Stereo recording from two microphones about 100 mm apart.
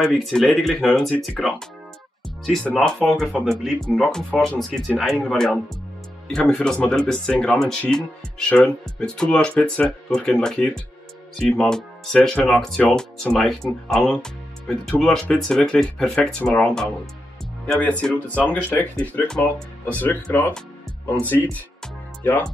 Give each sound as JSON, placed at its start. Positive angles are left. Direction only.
{"t": 0.0, "sound": "speech", "side_deg": 5}
{"t": 19.4, "sound": "speech", "side_deg": 20}